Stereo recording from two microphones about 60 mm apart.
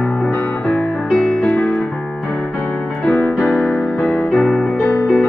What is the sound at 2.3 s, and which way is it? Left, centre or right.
Music, centre.